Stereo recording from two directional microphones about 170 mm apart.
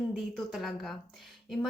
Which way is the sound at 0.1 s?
Centre (ahead or behind).